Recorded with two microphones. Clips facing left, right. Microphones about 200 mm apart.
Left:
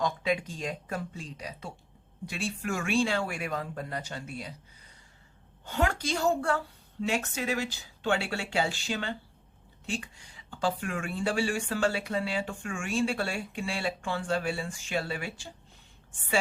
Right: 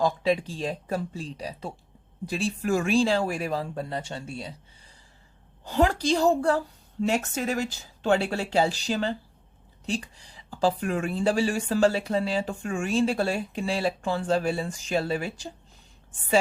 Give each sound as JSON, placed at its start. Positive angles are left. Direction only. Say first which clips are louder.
{"t": 0.0, "sound": "speech", "louder": "right 5 dB", "side_deg": -35}
{"t": 5.6, "sound": "speech", "louder": "right 6 dB", "side_deg": -35}